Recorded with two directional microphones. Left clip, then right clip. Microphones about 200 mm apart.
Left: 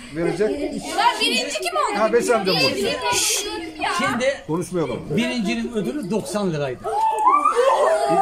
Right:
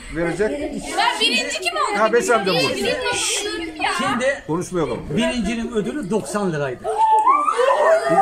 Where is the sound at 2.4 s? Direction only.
55° left (ahead or behind).